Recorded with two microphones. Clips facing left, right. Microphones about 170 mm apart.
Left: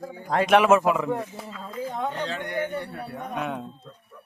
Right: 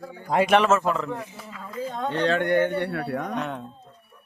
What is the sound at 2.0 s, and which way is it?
A man's voice, 70° right (ahead or behind).